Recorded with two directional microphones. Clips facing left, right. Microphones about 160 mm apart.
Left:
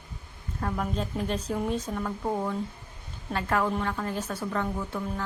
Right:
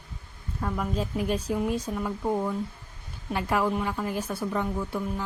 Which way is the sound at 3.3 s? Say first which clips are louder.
Right 1 dB; 15° right (ahead or behind).